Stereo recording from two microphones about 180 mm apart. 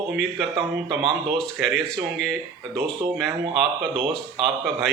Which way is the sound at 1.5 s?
Centre (ahead or behind).